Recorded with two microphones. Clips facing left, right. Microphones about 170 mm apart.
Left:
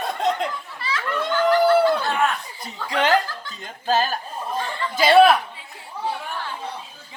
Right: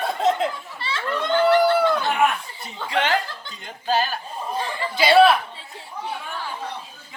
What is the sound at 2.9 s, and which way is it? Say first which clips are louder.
Chuckle: left 2 dB; 40° left (ahead or behind).